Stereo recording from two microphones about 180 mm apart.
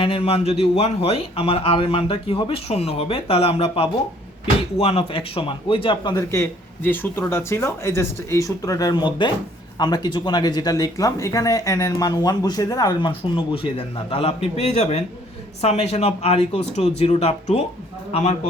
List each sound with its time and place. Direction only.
0.0 s speech: 30° left (ahead or behind)